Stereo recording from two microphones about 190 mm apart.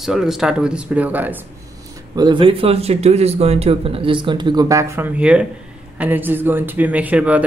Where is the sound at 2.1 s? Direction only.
25° right (ahead or behind).